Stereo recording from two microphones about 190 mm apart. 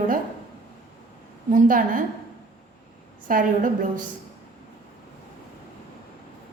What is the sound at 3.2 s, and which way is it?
Speech, 45° right (ahead or behind).